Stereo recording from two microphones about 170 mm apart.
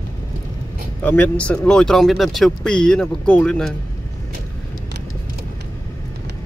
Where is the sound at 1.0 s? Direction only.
10° left (ahead or behind).